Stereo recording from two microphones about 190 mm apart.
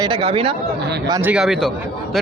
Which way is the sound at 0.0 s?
25° right (ahead or behind).